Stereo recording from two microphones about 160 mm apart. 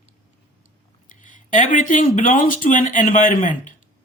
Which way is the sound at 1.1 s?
55° left (ahead or behind).